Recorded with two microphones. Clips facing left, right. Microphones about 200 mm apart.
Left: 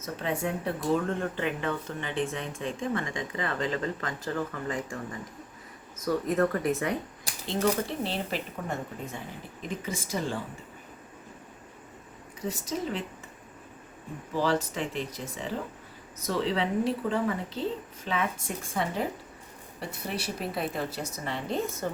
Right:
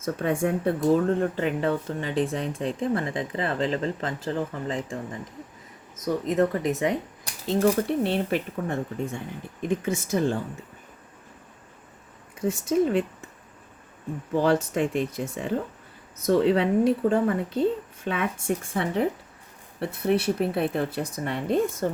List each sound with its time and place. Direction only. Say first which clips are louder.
0.0 s speech: right 6 dB; 50° right (ahead or behind)
0.9 s speech: right 6 dB; 35° right (ahead or behind)
6.1 s speech: right 3 dB; 20° right (ahead or behind)
7.6 s speech: right 5 dB; 55° right (ahead or behind)
12.4 s speech: right 10 dB; 50° right (ahead or behind)
14.7 s speech: right 8 dB; 50° right (ahead or behind)